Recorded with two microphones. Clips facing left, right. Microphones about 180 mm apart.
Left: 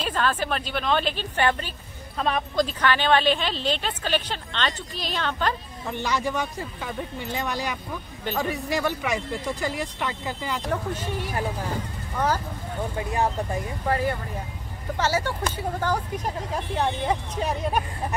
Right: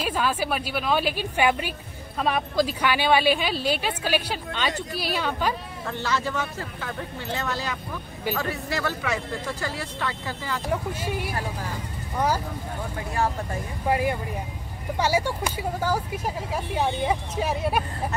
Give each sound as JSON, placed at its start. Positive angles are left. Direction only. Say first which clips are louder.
{"t": 0.0, "sound": "a woman's voice", "louder": "even", "side_deg": -10}
{"t": 5.9, "sound": "speech", "louder": "left 1 dB", "side_deg": 15}
{"t": 10.7, "sound": "a woman's voice", "louder": "right 2 dB", "side_deg": -10}
{"t": 13.1, "sound": "speech", "louder": "even", "side_deg": 20}
{"t": 13.8, "sound": "a woman's voice", "louder": "right 2 dB", "side_deg": -15}